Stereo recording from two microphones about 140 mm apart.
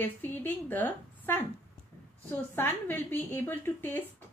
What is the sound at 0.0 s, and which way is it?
A woman's voice, 15° left (ahead or behind).